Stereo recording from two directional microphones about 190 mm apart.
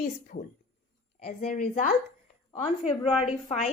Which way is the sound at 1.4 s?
45° left (ahead or behind).